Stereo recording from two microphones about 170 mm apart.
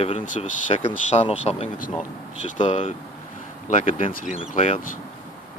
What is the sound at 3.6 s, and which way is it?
Speech, 45° left (ahead or behind).